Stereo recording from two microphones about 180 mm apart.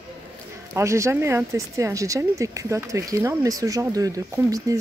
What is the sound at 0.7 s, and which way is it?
Speech, 15° right (ahead or behind).